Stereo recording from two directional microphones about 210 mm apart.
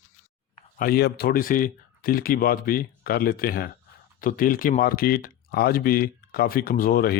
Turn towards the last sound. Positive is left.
turn(degrees=45)  # may be behind; listen again after turning